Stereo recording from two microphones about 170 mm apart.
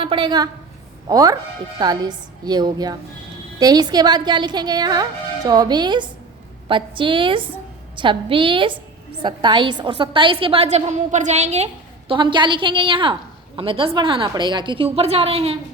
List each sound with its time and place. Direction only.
0.0 s a woman's voice: 30° right (ahead or behind)